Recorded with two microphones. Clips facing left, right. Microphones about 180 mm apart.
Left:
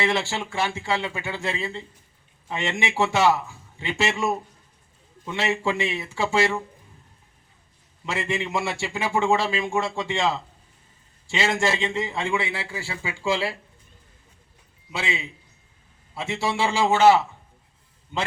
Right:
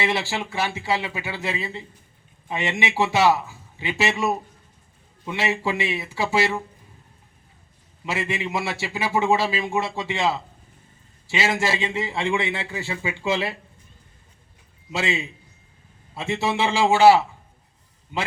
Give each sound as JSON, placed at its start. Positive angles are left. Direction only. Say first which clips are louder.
{"t": 0.0, "sound": "a man's voice", "louder": "even", "side_deg": -5}
{"t": 8.1, "sound": "a man's voice", "louder": "even", "side_deg": -5}
{"t": 12.3, "sound": "a man's voice", "louder": "right 2 dB", "side_deg": -20}
{"t": 16.5, "sound": "speech", "louder": "right 1 dB", "side_deg": -20}